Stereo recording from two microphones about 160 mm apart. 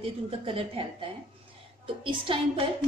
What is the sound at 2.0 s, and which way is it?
Speech, 30° right (ahead or behind).